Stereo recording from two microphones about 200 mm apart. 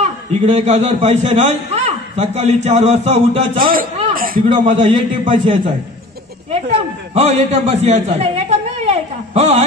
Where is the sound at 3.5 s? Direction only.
45° right (ahead or behind); by 5.6 s 25° right (ahead or behind).